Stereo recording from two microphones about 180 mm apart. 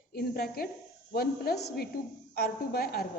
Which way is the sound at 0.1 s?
60° left (ahead or behind).